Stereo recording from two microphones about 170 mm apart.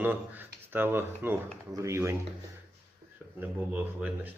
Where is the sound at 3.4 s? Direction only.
10° right (ahead or behind).